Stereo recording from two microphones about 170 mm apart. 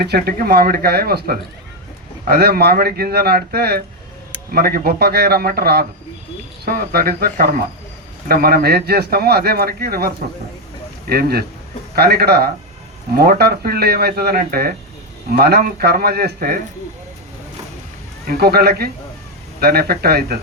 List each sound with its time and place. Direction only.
0.0 s a man's voice: 70° right (ahead or behind)
11.1 s a man's voice: 65° right (ahead or behind)
18.3 s speech: 65° right (ahead or behind)